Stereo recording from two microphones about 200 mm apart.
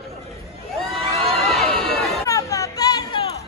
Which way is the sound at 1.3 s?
Centre (ahead or behind).